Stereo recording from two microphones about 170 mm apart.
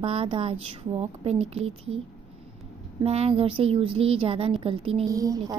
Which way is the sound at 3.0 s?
35° right (ahead or behind).